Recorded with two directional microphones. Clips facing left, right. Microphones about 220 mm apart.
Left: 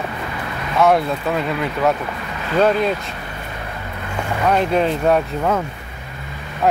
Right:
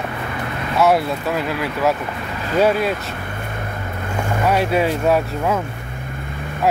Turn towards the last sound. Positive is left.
turn(degrees=-5)  # may be behind; listen again after turning